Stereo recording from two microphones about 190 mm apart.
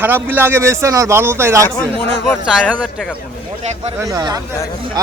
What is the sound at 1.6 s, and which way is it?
A man's voice, 10° left (ahead or behind).